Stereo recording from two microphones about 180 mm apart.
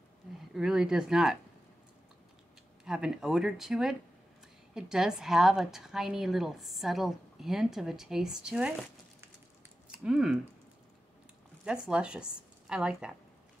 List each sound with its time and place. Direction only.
0.6 s a woman's voice: 5° right (ahead or behind)
2.8 s a woman's voice: 5° right (ahead or behind)
9.8 s speech: 5° right (ahead or behind)
11.6 s a woman's voice: 5° right (ahead or behind)